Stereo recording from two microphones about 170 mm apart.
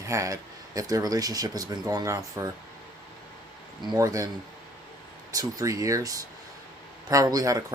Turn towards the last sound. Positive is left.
turn(degrees=-20)  # may be behind; listen again after turning